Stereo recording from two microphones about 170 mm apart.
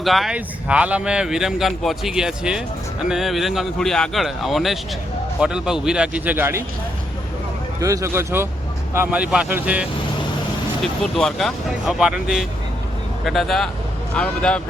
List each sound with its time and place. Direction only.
0.0 s speech: centre (ahead or behind)
7.8 s speech: 20° right (ahead or behind)
11.0 s speech: centre (ahead or behind)